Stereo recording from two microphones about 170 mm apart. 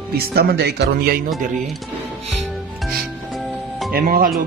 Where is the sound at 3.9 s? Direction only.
55° right (ahead or behind).